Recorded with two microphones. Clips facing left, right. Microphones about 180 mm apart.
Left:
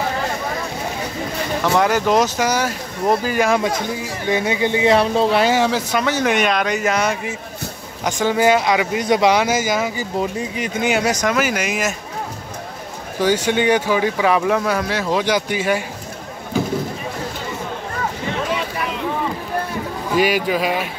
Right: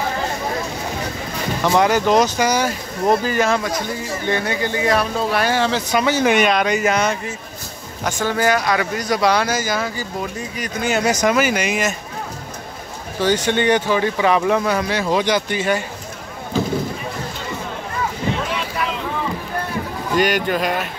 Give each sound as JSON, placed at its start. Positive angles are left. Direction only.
{"t": 1.6, "sound": "speech", "side_deg": 0}
{"t": 5.9, "sound": "speech", "side_deg": 0}
{"t": 8.0, "sound": "speech", "side_deg": 15}
{"t": 11.1, "sound": "speech", "side_deg": -5}
{"t": 13.2, "sound": "speech", "side_deg": 10}
{"t": 20.2, "sound": "speech", "side_deg": 5}